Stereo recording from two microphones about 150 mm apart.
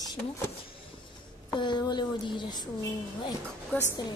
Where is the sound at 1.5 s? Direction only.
30° left (ahead or behind).